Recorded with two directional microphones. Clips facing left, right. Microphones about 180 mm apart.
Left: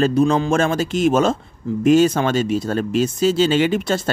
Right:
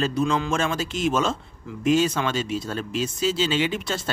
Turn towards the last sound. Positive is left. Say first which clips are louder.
# left 7 dB
turn(degrees=50)  # may be behind; listen again after turning